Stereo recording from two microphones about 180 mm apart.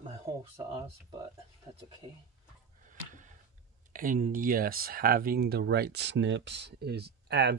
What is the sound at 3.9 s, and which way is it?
Speech, 50° right (ahead or behind).